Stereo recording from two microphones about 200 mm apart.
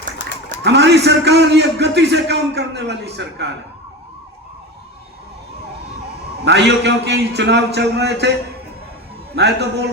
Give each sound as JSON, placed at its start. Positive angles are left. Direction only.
{"t": 0.6, "sound": "a man's voice", "side_deg": -55}
{"t": 6.4, "sound": "a man's voice", "side_deg": -60}
{"t": 9.3, "sound": "a man's voice", "side_deg": -60}